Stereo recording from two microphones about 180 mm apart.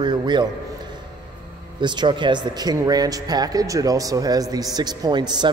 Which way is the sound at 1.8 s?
25° right (ahead or behind).